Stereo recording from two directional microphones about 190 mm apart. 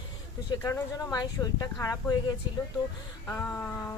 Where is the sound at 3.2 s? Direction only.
15° left (ahead or behind).